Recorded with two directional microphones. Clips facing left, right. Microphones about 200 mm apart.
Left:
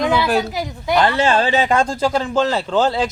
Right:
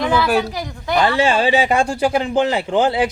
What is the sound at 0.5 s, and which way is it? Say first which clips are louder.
Speech: left 2 dB; 15° left (ahead or behind).